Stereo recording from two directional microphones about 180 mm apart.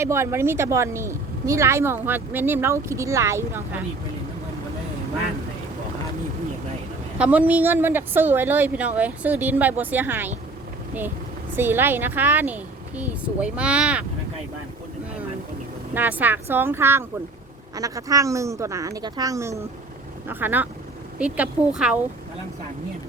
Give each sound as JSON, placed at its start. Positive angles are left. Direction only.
{"t": 0.0, "sound": "speech", "side_deg": -15}
{"t": 7.2, "sound": "speech", "side_deg": -10}
{"t": 11.5, "sound": "speech", "side_deg": -10}
{"t": 16.0, "sound": "a woman's voice", "side_deg": -10}